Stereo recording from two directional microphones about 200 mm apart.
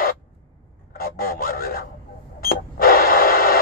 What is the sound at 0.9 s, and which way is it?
Radio, 45° left (ahead or behind).